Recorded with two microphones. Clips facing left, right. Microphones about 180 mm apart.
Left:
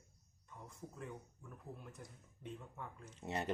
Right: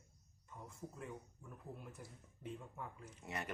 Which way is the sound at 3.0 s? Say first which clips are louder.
Left 7 dB; 25° left (ahead or behind).